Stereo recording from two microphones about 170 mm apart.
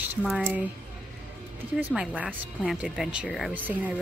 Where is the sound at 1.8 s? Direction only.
10° right (ahead or behind).